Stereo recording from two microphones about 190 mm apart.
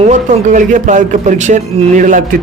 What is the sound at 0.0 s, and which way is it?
A man's voice, 40° right (ahead or behind).